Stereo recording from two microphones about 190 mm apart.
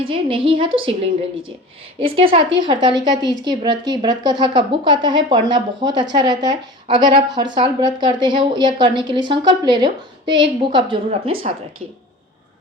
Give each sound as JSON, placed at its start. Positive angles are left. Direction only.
{"t": 0.0, "sound": "speech", "side_deg": -30}
{"t": 2.0, "sound": "speech", "side_deg": -30}